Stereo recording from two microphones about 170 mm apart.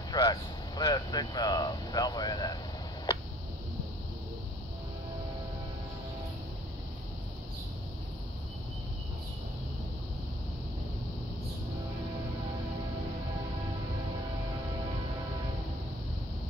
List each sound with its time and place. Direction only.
0.1 s speech: 25° left (ahead or behind)